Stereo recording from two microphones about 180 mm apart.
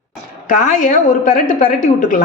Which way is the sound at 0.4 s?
45° left (ahead or behind).